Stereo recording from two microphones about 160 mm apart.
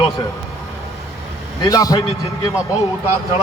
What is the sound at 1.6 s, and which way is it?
Speech, 20° left (ahead or behind).